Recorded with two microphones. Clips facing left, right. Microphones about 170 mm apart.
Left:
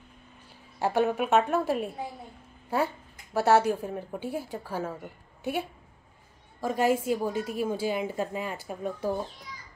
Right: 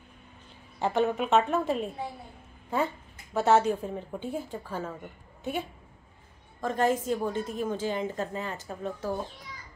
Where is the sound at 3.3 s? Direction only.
5° left (ahead or behind).